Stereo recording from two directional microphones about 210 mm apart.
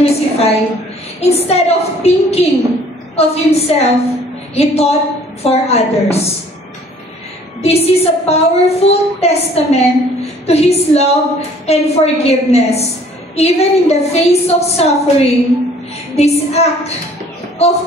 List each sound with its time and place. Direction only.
0.0 s a sound: 30° left (ahead or behind)
1.2 s a woman's voice: 30° left (ahead or behind)
7.6 s a woman's voice: 30° left (ahead or behind)